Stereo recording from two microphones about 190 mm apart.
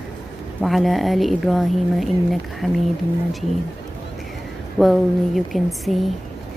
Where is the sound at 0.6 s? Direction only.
Centre (ahead or behind).